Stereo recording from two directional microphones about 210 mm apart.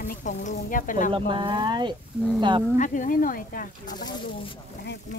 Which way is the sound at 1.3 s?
20° right (ahead or behind).